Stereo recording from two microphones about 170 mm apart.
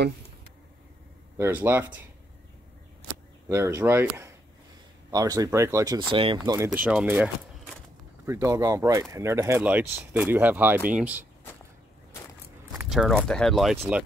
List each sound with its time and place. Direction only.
1.4 s speech: 15° right (ahead or behind)
3.4 s speech: 15° right (ahead or behind)
6.1 s speech: 30° right (ahead or behind); by 7.7 s 5° right (ahead or behind)
8.3 s speech: 20° right (ahead or behind)
12.9 s speech: centre (ahead or behind)